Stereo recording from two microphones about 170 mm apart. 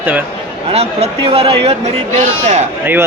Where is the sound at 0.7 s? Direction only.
40° right (ahead or behind).